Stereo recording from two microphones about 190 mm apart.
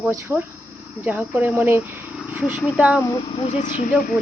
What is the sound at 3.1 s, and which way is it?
Speech, 30° left (ahead or behind).